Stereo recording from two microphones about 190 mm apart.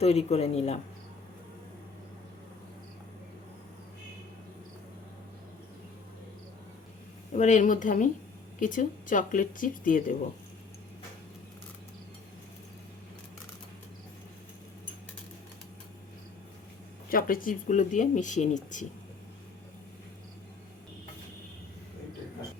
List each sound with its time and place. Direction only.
0.0 s speech: 35° left (ahead or behind)
7.3 s speech: 40° left (ahead or behind)
17.1 s speech: 50° left (ahead or behind)